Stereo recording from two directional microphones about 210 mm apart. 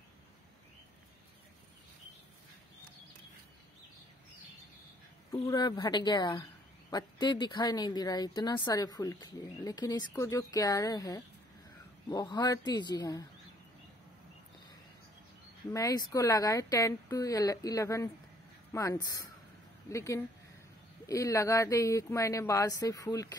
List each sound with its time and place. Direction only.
5.4 s speech: 20° left (ahead or behind)
15.7 s speech: 15° left (ahead or behind)